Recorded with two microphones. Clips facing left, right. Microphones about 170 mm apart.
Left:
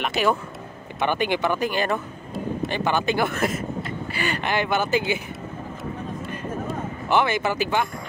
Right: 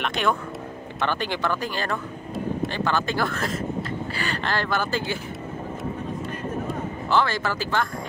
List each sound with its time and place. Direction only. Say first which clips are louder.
0.0 s speech: left 2 dB; 5° left (ahead or behind)
0.9 s speech: left 4 dB; 15° left (ahead or behind)
7.1 s speech: left 2 dB; 20° left (ahead or behind)